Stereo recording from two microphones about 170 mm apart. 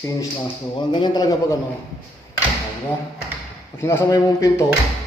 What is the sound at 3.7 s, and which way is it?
Speech, 15° left (ahead or behind).